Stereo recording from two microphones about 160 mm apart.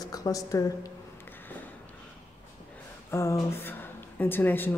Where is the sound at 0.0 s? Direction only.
20° left (ahead or behind).